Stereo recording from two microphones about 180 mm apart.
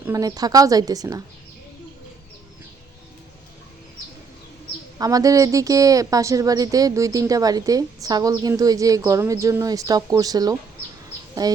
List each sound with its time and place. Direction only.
0.0 s speech: 20° right (ahead or behind)
4.9 s speech: 20° right (ahead or behind)